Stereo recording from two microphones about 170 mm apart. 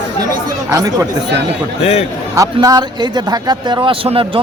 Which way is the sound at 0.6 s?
20° right (ahead or behind).